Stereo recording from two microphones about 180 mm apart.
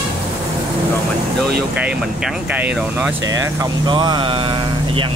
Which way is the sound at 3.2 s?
15° right (ahead or behind).